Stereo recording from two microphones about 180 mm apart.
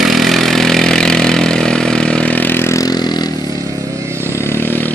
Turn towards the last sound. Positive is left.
turn(degrees=10)  # may be behind; listen again after turning